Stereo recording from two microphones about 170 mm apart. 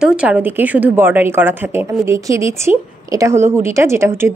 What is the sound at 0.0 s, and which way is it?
Speech, 5° right (ahead or behind).